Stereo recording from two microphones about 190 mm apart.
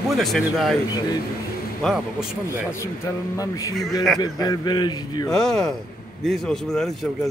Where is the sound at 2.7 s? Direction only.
15° left (ahead or behind).